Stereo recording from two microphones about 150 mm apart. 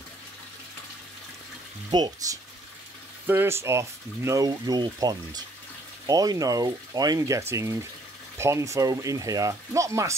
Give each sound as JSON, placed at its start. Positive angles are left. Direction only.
{"t": 1.9, "sound": "speech", "side_deg": -25}
{"t": 3.3, "sound": "speech", "side_deg": -15}